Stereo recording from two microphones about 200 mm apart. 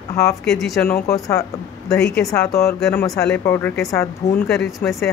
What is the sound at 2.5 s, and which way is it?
A woman's voice, 15° left (ahead or behind).